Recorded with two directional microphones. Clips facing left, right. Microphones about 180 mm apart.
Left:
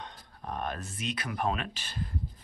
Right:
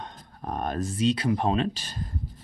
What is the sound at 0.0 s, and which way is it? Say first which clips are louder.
Speech: right 5 dB; 45° right (ahead or behind).